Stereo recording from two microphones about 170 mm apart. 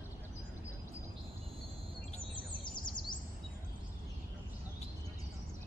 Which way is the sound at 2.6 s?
25° left (ahead or behind).